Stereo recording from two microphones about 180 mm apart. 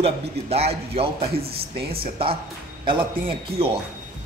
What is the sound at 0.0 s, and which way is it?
A man's voice, 35° right (ahead or behind).